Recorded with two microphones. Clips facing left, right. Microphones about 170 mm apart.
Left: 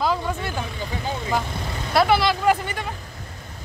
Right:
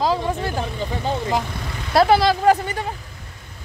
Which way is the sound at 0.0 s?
35° right (ahead or behind).